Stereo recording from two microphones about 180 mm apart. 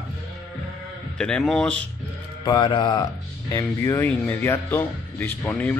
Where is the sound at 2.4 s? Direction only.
25° left (ahead or behind).